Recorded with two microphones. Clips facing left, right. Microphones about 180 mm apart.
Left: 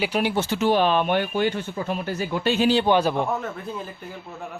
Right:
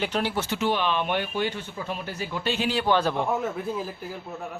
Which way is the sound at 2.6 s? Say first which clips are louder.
Left 5 dB; 25° left (ahead or behind).